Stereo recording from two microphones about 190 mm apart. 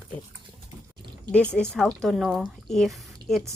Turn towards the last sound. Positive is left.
turn(degrees=0)  # may be behind; listen again after turning